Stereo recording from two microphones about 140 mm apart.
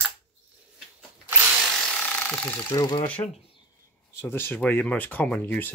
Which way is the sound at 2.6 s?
35° left (ahead or behind).